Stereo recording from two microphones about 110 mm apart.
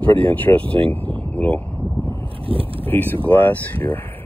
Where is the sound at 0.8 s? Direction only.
15° left (ahead or behind).